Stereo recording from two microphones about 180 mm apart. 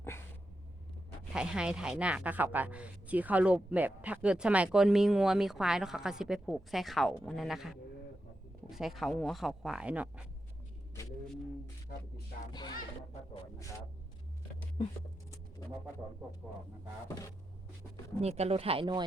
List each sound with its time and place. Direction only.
1.3 s speech: 5° right (ahead or behind)
11.9 s speech: 60° left (ahead or behind)
12.5 s speech: 20° left (ahead or behind)
18.2 s speech: 35° right (ahead or behind)